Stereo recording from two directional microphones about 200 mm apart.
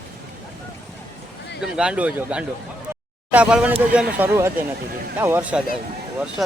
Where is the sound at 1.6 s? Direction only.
5° right (ahead or behind).